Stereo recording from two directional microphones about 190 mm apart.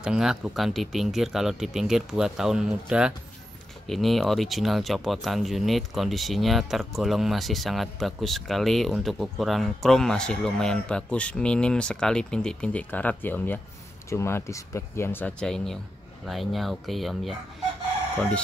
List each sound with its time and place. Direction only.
0.0 s speech: 5° right (ahead or behind)